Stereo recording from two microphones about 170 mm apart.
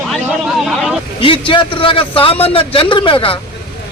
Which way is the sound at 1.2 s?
30° left (ahead or behind).